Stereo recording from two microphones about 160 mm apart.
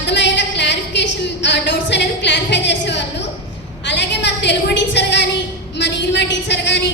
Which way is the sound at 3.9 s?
90° left.